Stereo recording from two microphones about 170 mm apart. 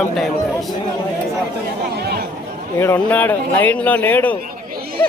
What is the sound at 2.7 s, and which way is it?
Speech, 15° left (ahead or behind).